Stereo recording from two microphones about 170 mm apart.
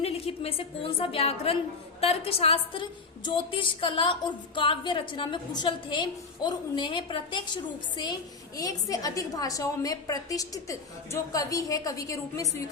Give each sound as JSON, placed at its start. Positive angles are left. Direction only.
{"t": 0.0, "sound": "a woman's voice", "side_deg": 35}